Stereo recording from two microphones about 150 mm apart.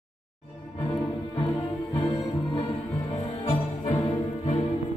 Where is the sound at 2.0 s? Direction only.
25° left (ahead or behind).